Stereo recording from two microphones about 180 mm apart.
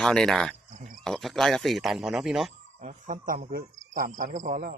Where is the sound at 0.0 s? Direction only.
5° left (ahead or behind).